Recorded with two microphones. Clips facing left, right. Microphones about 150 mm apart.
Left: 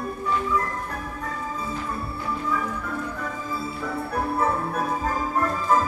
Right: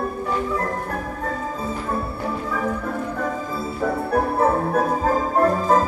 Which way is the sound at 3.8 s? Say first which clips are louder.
Right 7 dB; 55° right (ahead or behind).